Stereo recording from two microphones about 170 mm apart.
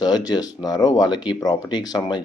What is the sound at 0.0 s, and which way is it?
Speech, 20° left (ahead or behind).